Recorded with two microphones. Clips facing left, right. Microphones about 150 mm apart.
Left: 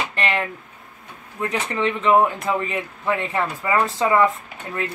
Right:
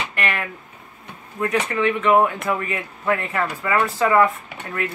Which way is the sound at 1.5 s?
30° left (ahead or behind).